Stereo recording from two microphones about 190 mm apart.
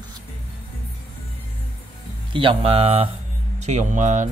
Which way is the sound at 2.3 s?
25° right (ahead or behind).